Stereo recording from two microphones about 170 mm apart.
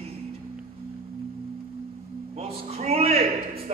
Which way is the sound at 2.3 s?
40° right (ahead or behind).